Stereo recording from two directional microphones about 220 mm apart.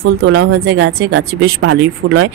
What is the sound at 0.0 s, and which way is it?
Speech, 70° right (ahead or behind).